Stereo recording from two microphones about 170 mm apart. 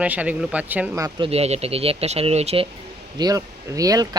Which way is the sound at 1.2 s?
35° right (ahead or behind).